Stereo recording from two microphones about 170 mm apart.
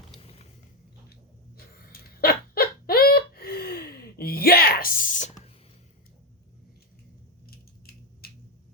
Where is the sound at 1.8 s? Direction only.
65° left (ahead or behind); by 5.3 s 45° left (ahead or behind).